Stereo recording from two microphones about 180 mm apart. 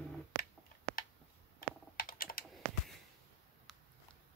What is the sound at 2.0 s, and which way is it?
Computer keyboard, 50° left (ahead or behind).